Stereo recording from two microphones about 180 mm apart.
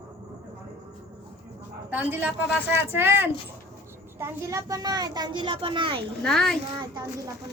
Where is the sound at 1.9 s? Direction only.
10° right (ahead or behind); by 6.1 s 30° right (ahead or behind).